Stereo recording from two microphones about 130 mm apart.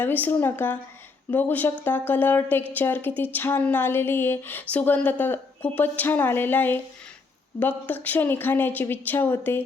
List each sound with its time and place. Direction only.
0.0 s speech: 15° left (ahead or behind)